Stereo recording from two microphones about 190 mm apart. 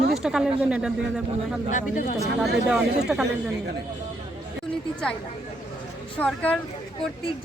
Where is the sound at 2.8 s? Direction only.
60° right (ahead or behind).